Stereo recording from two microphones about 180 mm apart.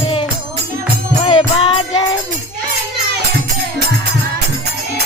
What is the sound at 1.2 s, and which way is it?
Music, 30° left (ahead or behind).